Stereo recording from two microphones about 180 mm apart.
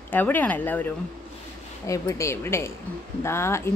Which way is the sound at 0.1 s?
10° left (ahead or behind).